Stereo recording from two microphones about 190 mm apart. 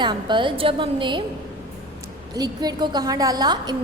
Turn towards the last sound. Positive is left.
turn(degrees=-20)  # may be behind; listen again after turning